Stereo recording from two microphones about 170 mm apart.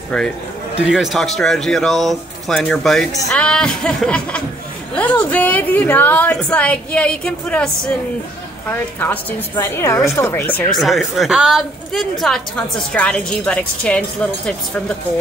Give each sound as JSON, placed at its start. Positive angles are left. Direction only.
{"t": 0.8, "sound": "a woman's voice", "side_deg": 0}
{"t": 10.8, "sound": "a woman's voice", "side_deg": 0}